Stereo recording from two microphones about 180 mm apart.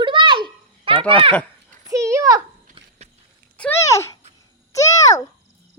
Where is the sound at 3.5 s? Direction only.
15° left (ahead or behind).